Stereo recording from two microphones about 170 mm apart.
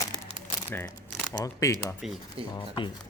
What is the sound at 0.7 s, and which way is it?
Speech, 10° left (ahead or behind).